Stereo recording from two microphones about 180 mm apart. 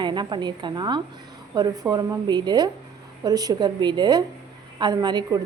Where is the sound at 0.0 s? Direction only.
25° right (ahead or behind).